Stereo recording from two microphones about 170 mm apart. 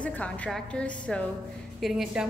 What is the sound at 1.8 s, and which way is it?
Speech, 5° right (ahead or behind).